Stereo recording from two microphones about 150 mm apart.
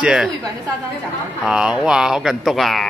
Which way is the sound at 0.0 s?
5° right (ahead or behind).